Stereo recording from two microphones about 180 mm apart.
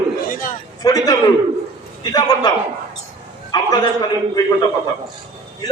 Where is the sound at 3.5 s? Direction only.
20° left (ahead or behind).